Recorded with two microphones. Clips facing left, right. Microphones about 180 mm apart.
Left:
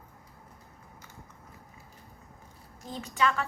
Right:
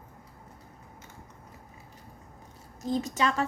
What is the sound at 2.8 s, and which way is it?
Speech, 40° right (ahead or behind).